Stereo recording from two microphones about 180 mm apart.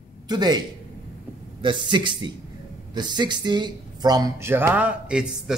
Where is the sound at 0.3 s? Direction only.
25° right (ahead or behind).